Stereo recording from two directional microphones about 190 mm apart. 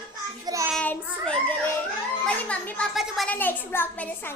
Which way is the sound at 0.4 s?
15° right (ahead or behind).